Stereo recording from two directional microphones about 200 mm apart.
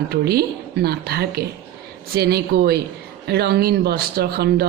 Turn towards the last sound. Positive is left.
turn(degrees=-50)  # may be behind; listen again after turning